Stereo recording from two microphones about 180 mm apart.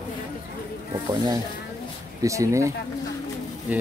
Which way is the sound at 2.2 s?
15° right (ahead or behind).